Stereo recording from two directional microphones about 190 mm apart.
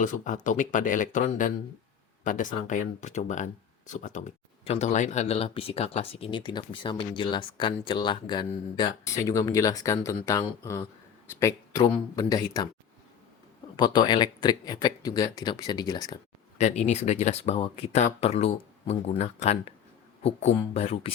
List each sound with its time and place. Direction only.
0.0 s speech: 40° left (ahead or behind); by 12.6 s 20° left (ahead or behind)
13.7 s speech: 25° left (ahead or behind)
16.6 s speech: 35° left (ahead or behind)